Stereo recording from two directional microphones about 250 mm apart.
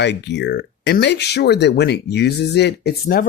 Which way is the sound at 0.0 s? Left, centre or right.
Left.